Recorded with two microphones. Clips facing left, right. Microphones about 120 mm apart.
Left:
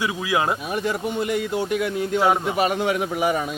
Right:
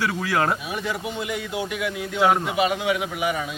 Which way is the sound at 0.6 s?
45° left (ahead or behind).